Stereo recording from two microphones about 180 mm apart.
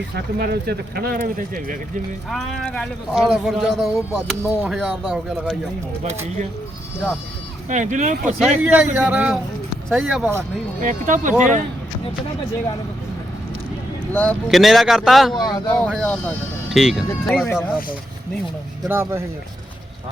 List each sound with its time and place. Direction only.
0.3 s speech: 60° right (ahead or behind)
2.3 s speech: 5° left (ahead or behind)
7.7 s speech: 40° right (ahead or behind)
8.2 s speech: centre (ahead or behind)
10.8 s speech: 45° right (ahead or behind)
14.1 s speech: 5° left (ahead or behind)
15.4 s speech: 20° left (ahead or behind)
15.9 s speech: 5° left (ahead or behind)
18.9 s speech: 15° right (ahead or behind)